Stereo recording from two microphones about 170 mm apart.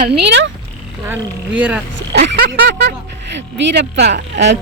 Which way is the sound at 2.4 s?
70° right (ahead or behind).